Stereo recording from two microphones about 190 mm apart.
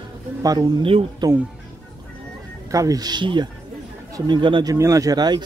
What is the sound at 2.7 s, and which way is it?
A man's voice, 20° right (ahead or behind).